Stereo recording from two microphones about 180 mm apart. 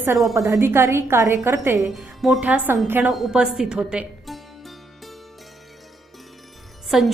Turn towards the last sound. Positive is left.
turn(degrees=-5)  # may be behind; listen again after turning